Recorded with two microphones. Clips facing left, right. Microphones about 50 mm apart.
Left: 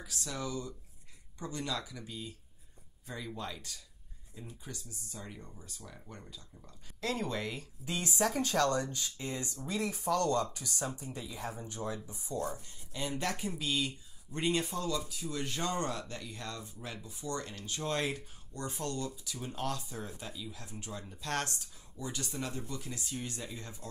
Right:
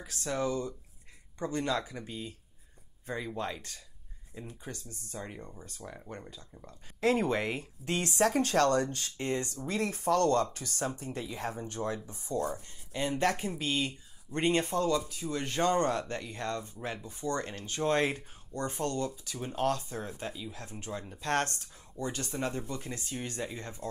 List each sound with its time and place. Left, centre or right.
0.0 s speech: right
3.3 s speech: right